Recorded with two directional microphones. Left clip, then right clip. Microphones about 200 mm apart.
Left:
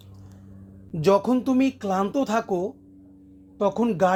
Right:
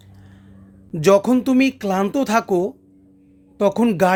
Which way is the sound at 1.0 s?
40° right (ahead or behind).